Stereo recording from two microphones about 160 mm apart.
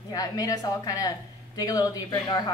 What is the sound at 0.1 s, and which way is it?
A woman's voice, 20° left (ahead or behind).